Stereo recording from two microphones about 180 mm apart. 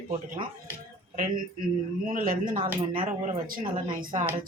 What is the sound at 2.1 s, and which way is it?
Speech, 50° right (ahead or behind).